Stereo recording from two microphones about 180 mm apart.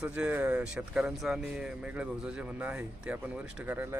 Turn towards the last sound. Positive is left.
turn(degrees=-10)  # may be behind; listen again after turning